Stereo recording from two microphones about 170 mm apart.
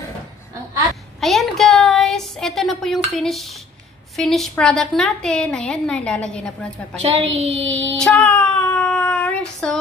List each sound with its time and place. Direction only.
1.2 s a woman's voice: centre (ahead or behind)
7.3 s child singing: 40° right (ahead or behind)
8.0 s a sound: 10° left (ahead or behind)
9.0 s child singing: 10° left (ahead or behind)